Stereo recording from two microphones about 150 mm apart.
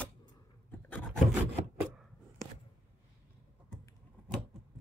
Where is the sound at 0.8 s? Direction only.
10° left (ahead or behind).